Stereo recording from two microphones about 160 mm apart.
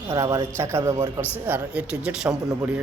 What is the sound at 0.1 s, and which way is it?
Speech, 20° right (ahead or behind).